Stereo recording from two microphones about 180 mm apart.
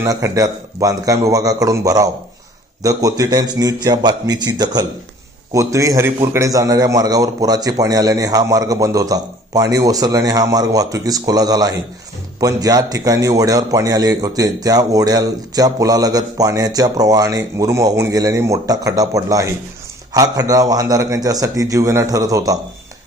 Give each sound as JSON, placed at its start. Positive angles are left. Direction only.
{"t": 0.0, "sound": "a man's voice", "side_deg": -20}